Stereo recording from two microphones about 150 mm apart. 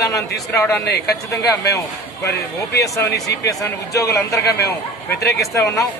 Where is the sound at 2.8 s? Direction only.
20° left (ahead or behind).